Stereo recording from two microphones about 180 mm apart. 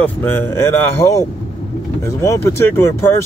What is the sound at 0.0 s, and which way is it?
Speech, 10° left (ahead or behind).